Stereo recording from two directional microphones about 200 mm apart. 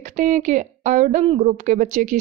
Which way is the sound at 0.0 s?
40° right (ahead or behind).